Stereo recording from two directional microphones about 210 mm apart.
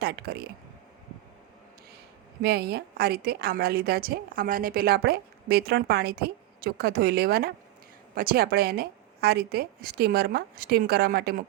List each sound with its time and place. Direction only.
0.0 s a woman's voice: 50° right (ahead or behind)
2.4 s a woman's voice: 50° right (ahead or behind)